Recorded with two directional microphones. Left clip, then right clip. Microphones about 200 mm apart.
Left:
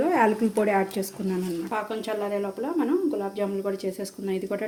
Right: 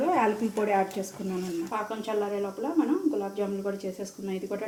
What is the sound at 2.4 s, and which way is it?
Speech, 60° left (ahead or behind).